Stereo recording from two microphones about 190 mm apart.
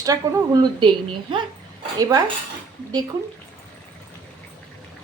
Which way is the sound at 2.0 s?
20° right (ahead or behind).